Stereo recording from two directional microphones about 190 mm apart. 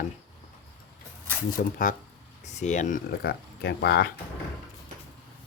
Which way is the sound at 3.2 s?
60° left (ahead or behind).